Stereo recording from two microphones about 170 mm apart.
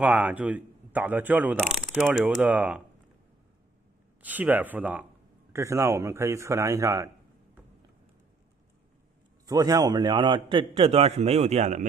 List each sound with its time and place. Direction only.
0.0 s speech: 10° right (ahead or behind)
4.2 s speech: 10° right (ahead or behind)
9.5 s a man's voice: 20° right (ahead or behind); by 11.9 s 45° right (ahead or behind)